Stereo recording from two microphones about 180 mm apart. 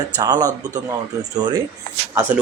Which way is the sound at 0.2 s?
20° right (ahead or behind).